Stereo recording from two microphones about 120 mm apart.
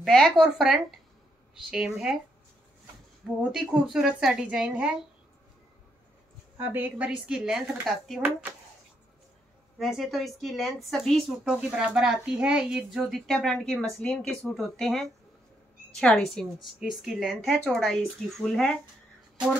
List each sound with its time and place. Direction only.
0.0 s a woman's voice: centre (ahead or behind)
3.5 s speech: 5° right (ahead or behind)
6.6 s speech: 15° right (ahead or behind)
8.2 s speech: 15° right (ahead or behind)
9.8 s a woman's voice: 5° right (ahead or behind)